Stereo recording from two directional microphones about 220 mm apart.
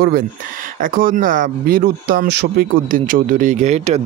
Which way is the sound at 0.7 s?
40° right (ahead or behind).